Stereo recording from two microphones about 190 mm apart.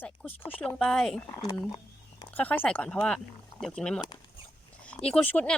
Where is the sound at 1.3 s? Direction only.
20° left (ahead or behind).